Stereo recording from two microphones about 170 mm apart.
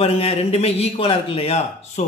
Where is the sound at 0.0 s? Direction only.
35° left (ahead or behind).